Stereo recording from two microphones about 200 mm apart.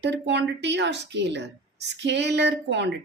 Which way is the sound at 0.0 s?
60° right (ahead or behind).